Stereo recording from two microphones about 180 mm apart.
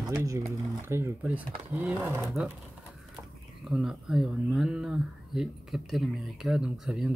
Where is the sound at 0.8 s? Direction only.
15° right (ahead or behind).